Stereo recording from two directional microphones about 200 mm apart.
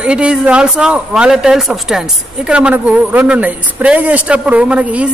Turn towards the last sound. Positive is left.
turn(degrees=-5)  # may be behind; listen again after turning